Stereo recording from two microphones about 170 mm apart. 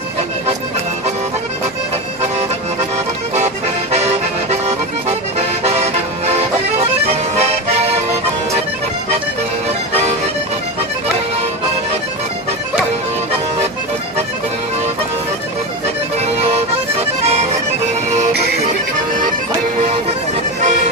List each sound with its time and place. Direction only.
4.4 s music: 40° right (ahead or behind)
9.9 s music: 40° right (ahead or behind)
16.1 s music: 40° right (ahead or behind)
20.6 s music: 45° right (ahead or behind)